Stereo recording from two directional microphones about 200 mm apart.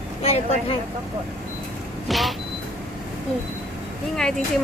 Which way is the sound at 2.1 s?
Centre (ahead or behind).